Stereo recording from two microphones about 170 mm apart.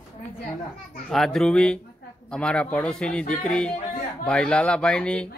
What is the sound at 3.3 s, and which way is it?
Music, 5° left (ahead or behind).